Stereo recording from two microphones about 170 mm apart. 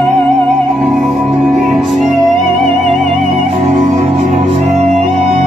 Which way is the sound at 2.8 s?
40° right (ahead or behind).